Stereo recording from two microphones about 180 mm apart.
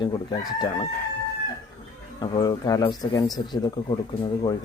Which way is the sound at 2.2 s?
25° left (ahead or behind).